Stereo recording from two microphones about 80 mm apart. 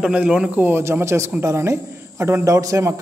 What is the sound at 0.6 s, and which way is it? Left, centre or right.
Speech, right.